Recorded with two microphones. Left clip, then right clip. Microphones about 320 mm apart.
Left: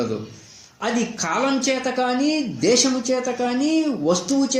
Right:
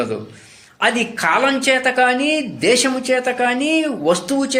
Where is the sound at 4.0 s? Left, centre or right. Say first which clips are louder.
Right 4 dB; right.